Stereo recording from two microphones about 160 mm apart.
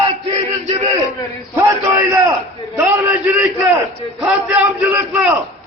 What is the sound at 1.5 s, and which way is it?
A man's voice, 15° right (ahead or behind).